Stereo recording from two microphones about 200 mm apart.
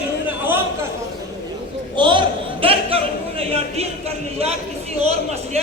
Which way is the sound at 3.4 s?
30° right (ahead or behind).